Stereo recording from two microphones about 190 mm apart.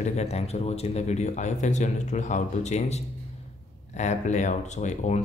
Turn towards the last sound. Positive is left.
turn(degrees=40)  # may be behind; listen again after turning